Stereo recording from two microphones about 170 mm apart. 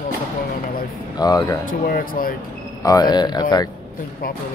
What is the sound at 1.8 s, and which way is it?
Speech, 60° left (ahead or behind).